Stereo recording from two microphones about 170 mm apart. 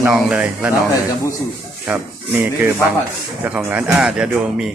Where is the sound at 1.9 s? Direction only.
5° right (ahead or behind).